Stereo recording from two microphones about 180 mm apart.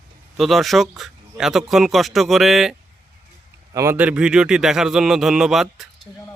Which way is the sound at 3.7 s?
15° right (ahead or behind).